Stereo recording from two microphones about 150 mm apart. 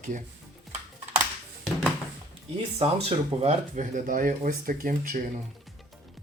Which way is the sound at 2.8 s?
40° right (ahead or behind).